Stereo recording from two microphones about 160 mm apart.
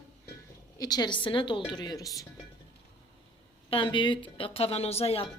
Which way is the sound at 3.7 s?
30° left (ahead or behind).